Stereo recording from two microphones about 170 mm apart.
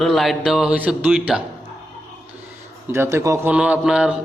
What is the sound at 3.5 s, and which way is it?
Speech, 5° right (ahead or behind).